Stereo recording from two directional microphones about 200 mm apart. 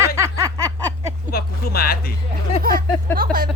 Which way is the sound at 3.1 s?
45° right (ahead or behind).